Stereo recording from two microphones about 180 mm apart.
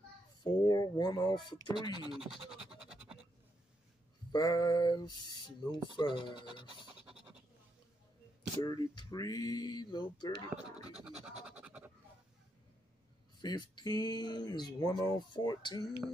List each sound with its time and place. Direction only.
0.4 s speech: 20° left (ahead or behind)
2.1 s scratch: centre (ahead or behind)
4.3 s speech: 25° left (ahead or behind)
8.5 s speech: 20° left (ahead or behind)
11.6 s scratch: 5° right (ahead or behind)
13.4 s speech: 25° left (ahead or behind)